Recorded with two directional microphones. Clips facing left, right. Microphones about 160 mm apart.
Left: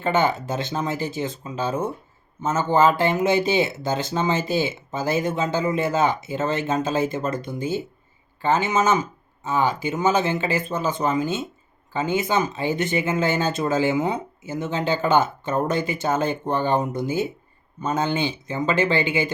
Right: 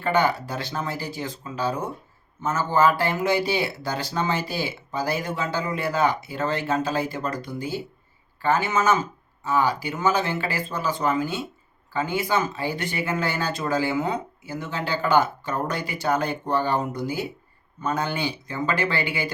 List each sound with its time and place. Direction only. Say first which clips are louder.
0.0 s speech: left 1 dB; 20° left (ahead or behind)